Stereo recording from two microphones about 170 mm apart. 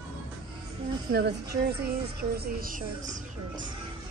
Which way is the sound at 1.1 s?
70° right (ahead or behind).